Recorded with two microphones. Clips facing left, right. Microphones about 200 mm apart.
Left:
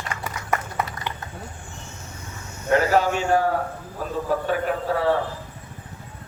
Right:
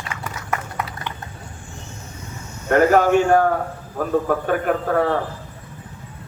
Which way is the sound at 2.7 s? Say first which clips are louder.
Right 5 dB; 50° right (ahead or behind).